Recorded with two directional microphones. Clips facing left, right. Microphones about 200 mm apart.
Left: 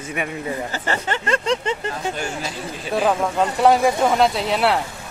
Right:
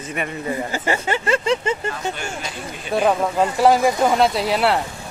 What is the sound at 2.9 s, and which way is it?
Speech, 5° right (ahead or behind).